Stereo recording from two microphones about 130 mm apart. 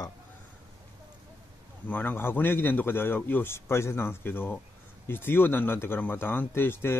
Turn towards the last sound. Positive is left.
turn(degrees=15)  # may be behind; listen again after turning